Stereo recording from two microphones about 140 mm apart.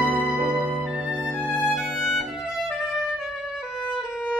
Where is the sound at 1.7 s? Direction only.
5° right (ahead or behind).